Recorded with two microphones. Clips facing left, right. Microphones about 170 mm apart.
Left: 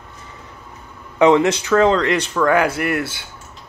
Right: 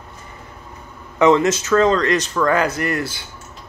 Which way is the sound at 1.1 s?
15° left (ahead or behind).